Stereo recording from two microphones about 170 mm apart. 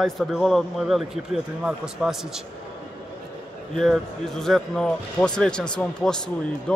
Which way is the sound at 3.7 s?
Centre (ahead or behind).